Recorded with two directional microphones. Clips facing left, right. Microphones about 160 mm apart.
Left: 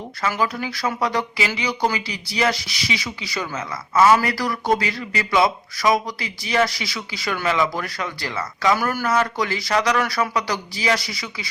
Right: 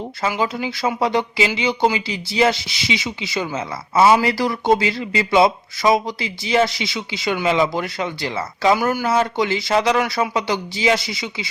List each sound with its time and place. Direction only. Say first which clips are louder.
0.2 s speech: right 1 dB; 25° right (ahead or behind)
8.7 s speech: right 4 dB; 15° right (ahead or behind)
9.0 s speech: right 1 dB; 25° right (ahead or behind)